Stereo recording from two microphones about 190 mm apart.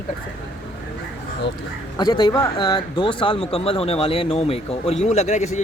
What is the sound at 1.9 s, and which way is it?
Speech, 20° left (ahead or behind).